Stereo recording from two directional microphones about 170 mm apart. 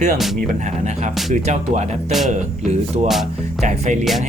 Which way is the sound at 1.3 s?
45° right (ahead or behind).